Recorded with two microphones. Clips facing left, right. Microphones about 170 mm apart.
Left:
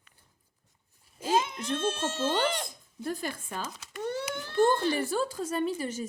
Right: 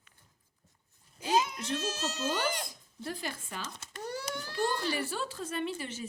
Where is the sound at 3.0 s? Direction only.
50° left (ahead or behind).